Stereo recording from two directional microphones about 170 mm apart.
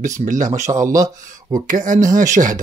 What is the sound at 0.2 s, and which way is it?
Speech, 50° right (ahead or behind).